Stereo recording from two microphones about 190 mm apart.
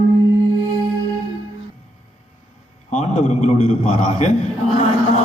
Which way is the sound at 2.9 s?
40° left (ahead or behind).